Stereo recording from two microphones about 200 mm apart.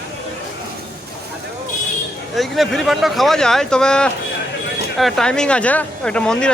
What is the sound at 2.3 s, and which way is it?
Speech, centre (ahead or behind).